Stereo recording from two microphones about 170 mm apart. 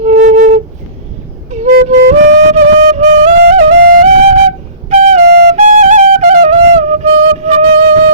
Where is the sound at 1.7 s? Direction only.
55° right (ahead or behind).